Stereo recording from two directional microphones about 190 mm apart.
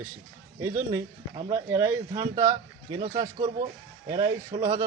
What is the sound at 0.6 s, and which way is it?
Speech, 15° right (ahead or behind).